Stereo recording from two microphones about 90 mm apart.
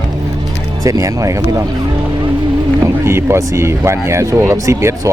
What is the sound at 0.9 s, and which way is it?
Speech, 40° right (ahead or behind).